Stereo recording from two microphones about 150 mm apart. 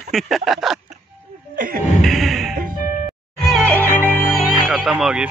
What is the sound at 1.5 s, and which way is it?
Music, 70° right (ahead or behind).